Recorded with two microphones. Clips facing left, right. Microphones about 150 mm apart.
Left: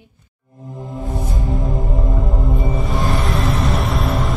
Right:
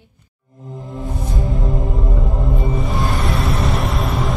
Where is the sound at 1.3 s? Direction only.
Centre (ahead or behind).